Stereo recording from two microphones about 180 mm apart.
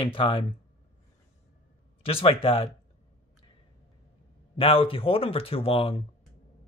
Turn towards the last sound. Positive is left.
turn(degrees=30)  # may be behind; listen again after turning